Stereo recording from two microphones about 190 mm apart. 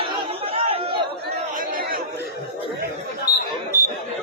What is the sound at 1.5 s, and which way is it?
Chatter, 50° right (ahead or behind).